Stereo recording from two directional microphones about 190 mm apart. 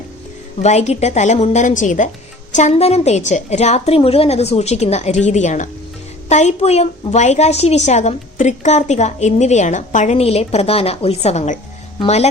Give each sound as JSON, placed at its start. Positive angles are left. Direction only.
{"t": 0.6, "sound": "a woman's voice", "side_deg": 35}